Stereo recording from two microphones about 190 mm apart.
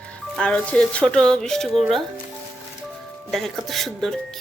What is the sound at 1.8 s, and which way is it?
Speech, 30° right (ahead or behind).